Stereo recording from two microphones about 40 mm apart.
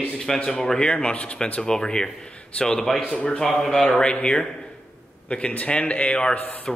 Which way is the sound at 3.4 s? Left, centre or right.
Centre.